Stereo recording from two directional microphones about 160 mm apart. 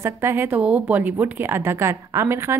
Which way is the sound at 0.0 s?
15° right (ahead or behind).